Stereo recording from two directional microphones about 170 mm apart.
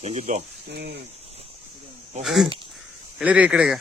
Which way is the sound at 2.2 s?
Centre (ahead or behind).